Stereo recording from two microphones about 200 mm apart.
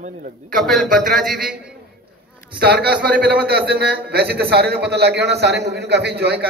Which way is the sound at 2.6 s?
55° right (ahead or behind).